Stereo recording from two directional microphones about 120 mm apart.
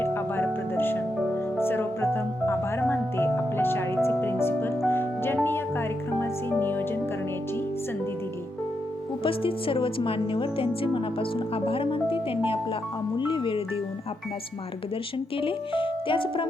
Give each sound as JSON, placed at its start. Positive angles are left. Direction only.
{"t": 0.0, "sound": "music", "side_deg": 20}
{"t": 9.2, "sound": "speech", "side_deg": 50}
{"t": 15.4, "sound": "speech", "side_deg": 45}